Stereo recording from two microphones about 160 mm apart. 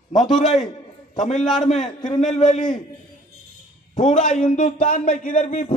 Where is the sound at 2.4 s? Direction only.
50° left (ahead or behind).